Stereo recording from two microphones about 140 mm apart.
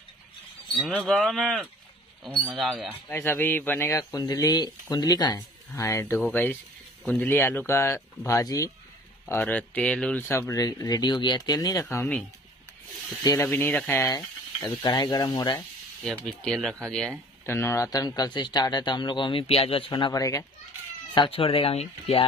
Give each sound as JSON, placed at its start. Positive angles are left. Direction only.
{"t": 0.9, "sound": "speech", "side_deg": 5}
{"t": 3.1, "sound": "speech", "side_deg": 15}
{"t": 9.2, "sound": "speech", "side_deg": 10}
{"t": 13.2, "sound": "speech", "side_deg": 25}
{"t": 13.5, "sound": "speech", "side_deg": 10}
{"t": 14.8, "sound": "speech", "side_deg": 30}
{"t": 16.0, "sound": "speech", "side_deg": 5}
{"t": 17.5, "sound": "speech", "side_deg": 20}
{"t": 21.1, "sound": "speech", "side_deg": 40}